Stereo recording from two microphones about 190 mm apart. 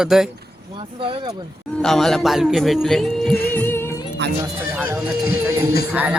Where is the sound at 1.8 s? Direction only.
Centre (ahead or behind).